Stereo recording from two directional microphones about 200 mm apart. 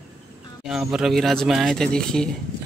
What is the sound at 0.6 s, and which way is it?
Speech, centre (ahead or behind).